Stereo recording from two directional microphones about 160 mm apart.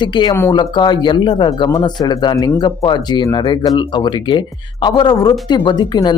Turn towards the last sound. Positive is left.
turn(degrees=25)  # may be behind; listen again after turning